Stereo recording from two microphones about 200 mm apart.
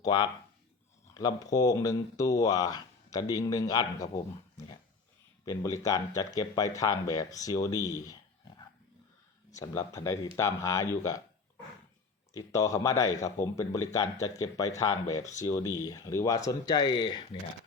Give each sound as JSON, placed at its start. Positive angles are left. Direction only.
{"t": 0.0, "sound": "speech", "side_deg": 20}
{"t": 9.6, "sound": "speech", "side_deg": 15}
{"t": 12.3, "sound": "speech", "side_deg": 15}